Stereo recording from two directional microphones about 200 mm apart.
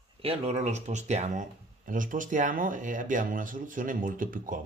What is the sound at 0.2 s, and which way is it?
Speech, 30° right (ahead or behind).